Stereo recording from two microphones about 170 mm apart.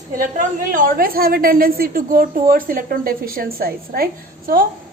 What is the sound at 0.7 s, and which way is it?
A woman's voice, 55° right (ahead or behind).